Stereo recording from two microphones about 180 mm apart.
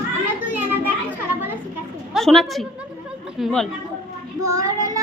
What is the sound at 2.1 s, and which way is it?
A woman's voice, centre (ahead or behind).